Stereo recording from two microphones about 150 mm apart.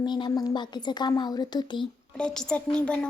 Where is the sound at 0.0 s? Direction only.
30° left (ahead or behind).